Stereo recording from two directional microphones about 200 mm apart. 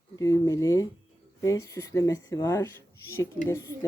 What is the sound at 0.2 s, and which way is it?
Speech, 15° left (ahead or behind).